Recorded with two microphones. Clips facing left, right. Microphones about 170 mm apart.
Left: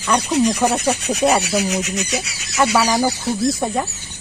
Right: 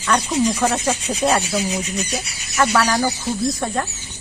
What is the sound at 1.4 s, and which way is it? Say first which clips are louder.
Speech: left 3 dB; 75° left (ahead or behind).